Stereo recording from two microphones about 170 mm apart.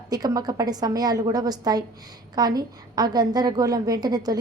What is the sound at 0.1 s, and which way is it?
A woman's voice, 20° right (ahead or behind).